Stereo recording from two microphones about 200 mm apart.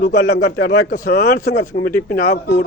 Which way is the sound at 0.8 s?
45° left (ahead or behind).